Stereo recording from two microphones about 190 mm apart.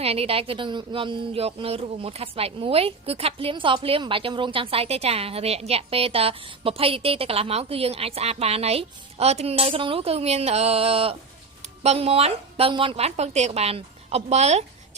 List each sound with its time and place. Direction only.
0.0 s a woman's voice: 30° right (ahead or behind)